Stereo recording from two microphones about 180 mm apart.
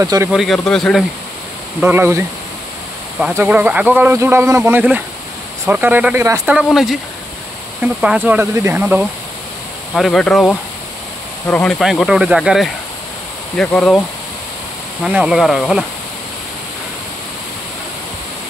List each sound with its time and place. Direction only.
0.0 s speech: 15° right (ahead or behind)
0.3 s speech: centre (ahead or behind)
1.8 s speech: 10° right (ahead or behind)
8.0 s speech: 5° right (ahead or behind)
9.9 s speech: centre (ahead or behind)
11.8 s speech: centre (ahead or behind)
15.0 s speech: 5° right (ahead or behind)